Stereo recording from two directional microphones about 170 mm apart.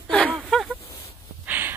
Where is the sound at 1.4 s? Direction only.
10° right (ahead or behind).